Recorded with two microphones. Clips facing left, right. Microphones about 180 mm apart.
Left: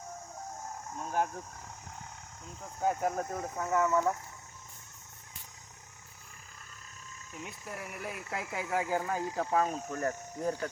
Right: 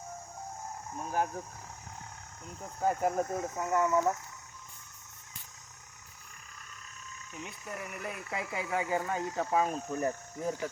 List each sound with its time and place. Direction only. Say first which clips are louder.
0.9 s speech: even; 5° right (ahead or behind)
2.6 s speech: right 1 dB; 5° right (ahead or behind)
7.4 s speech: right 1 dB; 5° left (ahead or behind)
9.9 s speech: right 1 dB; 15° right (ahead or behind)